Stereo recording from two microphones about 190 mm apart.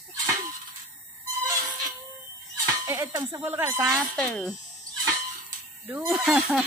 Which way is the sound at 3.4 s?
10° right (ahead or behind).